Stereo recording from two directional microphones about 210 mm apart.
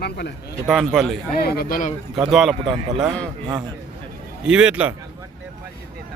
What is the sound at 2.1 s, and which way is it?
Speech, centre (ahead or behind).